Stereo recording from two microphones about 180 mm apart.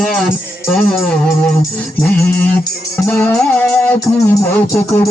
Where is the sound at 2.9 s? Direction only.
10° left (ahead or behind).